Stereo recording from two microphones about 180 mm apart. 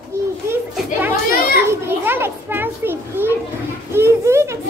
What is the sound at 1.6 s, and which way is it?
A child's voice, 15° right (ahead or behind).